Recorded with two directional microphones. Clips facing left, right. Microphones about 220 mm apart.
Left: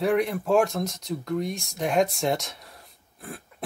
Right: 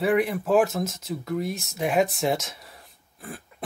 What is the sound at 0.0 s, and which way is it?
Speech, centre (ahead or behind).